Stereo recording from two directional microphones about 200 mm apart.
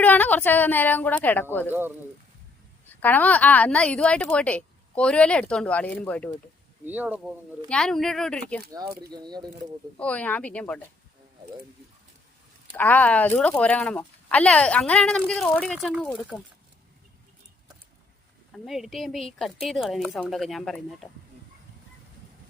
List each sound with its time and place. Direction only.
0.0 s a woman's voice: 10° left (ahead or behind)
2.9 s a woman's voice: 10° left (ahead or behind)
6.8 s speech: 10° right (ahead or behind)
7.7 s speech: 5° left (ahead or behind)
8.7 s speech: 15° right (ahead or behind)
10.0 s a woman's voice: 5° left (ahead or behind)
12.7 s speech: 10° left (ahead or behind)
18.5 s speech: centre (ahead or behind)